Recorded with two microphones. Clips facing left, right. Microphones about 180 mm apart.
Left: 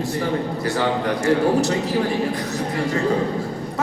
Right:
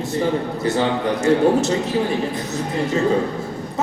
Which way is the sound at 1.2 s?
20° right (ahead or behind).